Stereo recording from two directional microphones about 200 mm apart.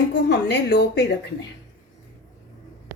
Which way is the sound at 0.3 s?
60° left (ahead or behind).